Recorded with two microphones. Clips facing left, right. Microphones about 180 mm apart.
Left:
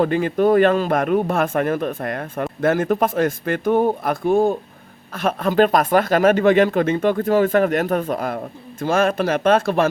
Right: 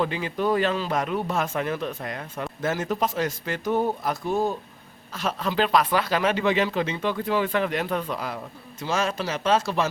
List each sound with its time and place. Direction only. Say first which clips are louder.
0.0 s a man's voice: left 8 dB; 50° left (ahead or behind)